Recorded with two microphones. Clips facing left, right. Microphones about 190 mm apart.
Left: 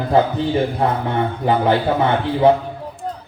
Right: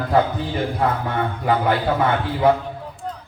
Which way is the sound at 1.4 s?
25° left (ahead or behind).